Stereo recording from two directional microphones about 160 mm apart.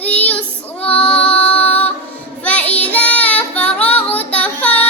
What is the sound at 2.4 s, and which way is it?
Child singing, 10° left (ahead or behind).